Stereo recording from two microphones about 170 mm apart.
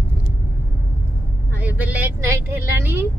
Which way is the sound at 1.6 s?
10° right (ahead or behind).